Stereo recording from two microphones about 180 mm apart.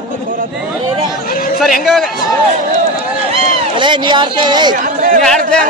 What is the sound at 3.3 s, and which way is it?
Speech, 25° right (ahead or behind).